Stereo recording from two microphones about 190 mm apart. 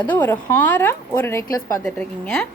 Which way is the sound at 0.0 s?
10° left (ahead or behind).